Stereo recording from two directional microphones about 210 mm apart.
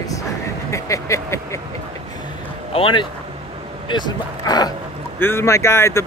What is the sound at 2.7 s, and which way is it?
Speech, 25° left (ahead or behind).